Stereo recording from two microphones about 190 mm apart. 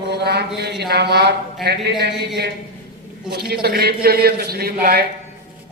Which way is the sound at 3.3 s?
55° right (ahead or behind).